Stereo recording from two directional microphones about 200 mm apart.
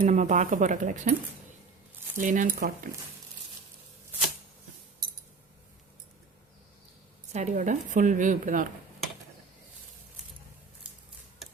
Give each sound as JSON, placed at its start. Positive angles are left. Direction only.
{"t": 0.0, "sound": "a woman's voice", "side_deg": -35}
{"t": 2.1, "sound": "a woman's voice", "side_deg": -40}
{"t": 7.3, "sound": "a woman's voice", "side_deg": -35}